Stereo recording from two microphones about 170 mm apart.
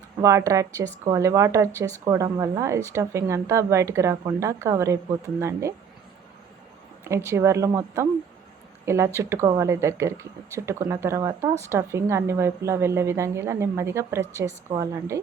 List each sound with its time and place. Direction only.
0.2 s a woman's voice: 20° right (ahead or behind)
7.3 s a woman's voice: 15° right (ahead or behind)